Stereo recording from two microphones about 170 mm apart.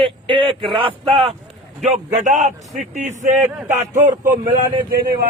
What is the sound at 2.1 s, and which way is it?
A man's voice, 45° right (ahead or behind).